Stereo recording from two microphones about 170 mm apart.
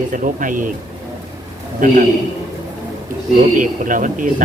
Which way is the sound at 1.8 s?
50° right (ahead or behind).